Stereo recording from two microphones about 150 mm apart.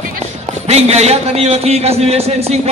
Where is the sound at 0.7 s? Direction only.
45° right (ahead or behind).